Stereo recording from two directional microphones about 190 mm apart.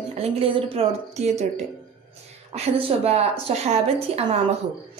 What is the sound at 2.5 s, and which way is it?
Speech, 35° right (ahead or behind).